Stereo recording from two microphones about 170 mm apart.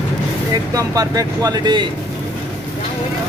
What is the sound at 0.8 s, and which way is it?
Speech, 20° right (ahead or behind).